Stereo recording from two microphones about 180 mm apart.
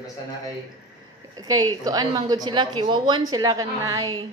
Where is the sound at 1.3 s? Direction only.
20° right (ahead or behind).